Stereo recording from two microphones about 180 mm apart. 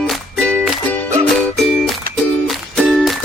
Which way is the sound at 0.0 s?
5° left (ahead or behind).